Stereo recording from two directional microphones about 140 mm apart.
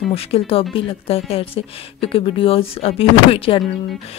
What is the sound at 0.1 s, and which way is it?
Speech, 45° left (ahead or behind).